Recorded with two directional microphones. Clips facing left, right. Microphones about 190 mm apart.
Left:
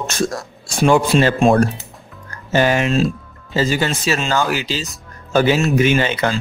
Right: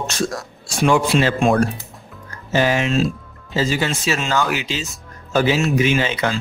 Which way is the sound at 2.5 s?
50° left (ahead or behind).